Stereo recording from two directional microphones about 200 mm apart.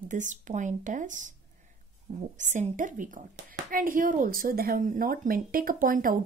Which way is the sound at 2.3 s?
40° right (ahead or behind).